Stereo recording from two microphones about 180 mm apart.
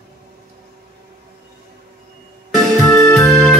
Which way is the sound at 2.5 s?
Centre (ahead or behind).